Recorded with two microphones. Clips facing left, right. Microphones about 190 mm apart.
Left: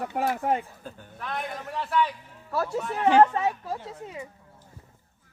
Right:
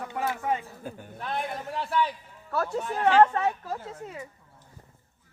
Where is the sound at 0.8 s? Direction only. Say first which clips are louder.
Right 3 dB; 15° right (ahead or behind).